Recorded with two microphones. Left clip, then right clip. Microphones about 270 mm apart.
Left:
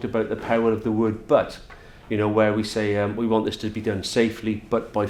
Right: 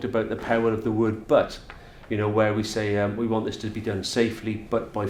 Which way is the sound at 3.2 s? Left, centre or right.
Left.